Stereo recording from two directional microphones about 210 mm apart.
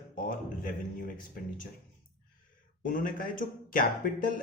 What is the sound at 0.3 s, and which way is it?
Speech, 40° left (ahead or behind).